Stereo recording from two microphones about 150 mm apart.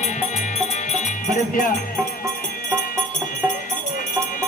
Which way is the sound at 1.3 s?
60° left (ahead or behind).